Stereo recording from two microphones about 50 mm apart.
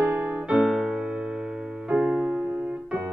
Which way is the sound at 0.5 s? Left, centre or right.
Centre.